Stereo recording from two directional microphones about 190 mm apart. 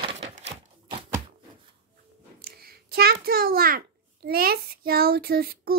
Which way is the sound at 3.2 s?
50° right (ahead or behind).